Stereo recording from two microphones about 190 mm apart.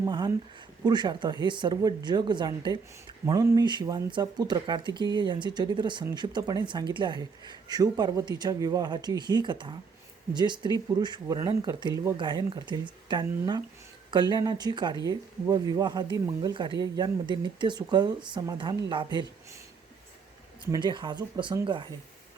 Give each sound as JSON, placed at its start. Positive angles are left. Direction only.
{"t": 0.0, "sound": "speech", "side_deg": -20}
{"t": 20.7, "sound": "speech", "side_deg": -25}